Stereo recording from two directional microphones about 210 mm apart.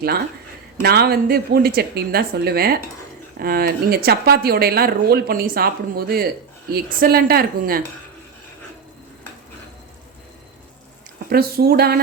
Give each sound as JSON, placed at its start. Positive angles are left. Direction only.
{"t": 0.8, "sound": "speech", "side_deg": -50}
{"t": 11.3, "sound": "speech", "side_deg": -45}